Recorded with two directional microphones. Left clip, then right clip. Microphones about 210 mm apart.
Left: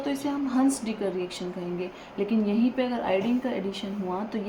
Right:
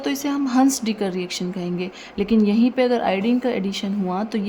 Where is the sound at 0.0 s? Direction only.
50° right (ahead or behind).